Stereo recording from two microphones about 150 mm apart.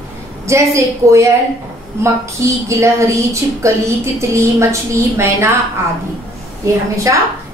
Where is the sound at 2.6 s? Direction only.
20° right (ahead or behind).